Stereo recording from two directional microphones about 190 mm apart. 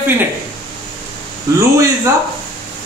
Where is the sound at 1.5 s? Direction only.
15° right (ahead or behind).